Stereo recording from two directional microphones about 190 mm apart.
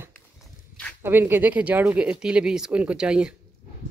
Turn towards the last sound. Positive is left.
turn(degrees=-5)  # may be behind; listen again after turning